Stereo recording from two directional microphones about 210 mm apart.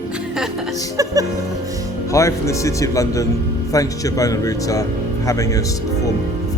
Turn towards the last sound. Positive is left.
turn(degrees=15)  # may be behind; listen again after turning